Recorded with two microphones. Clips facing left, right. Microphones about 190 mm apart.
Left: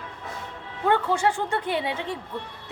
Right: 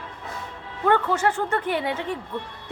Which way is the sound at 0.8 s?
15° left (ahead or behind).